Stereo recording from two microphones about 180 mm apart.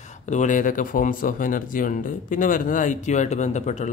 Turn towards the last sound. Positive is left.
turn(degrees=40)  # may be behind; listen again after turning